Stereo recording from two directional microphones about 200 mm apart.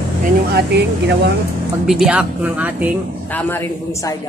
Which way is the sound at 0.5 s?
55° right (ahead or behind).